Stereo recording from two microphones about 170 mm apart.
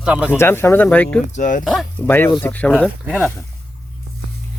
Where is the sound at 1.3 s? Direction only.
50° left (ahead or behind).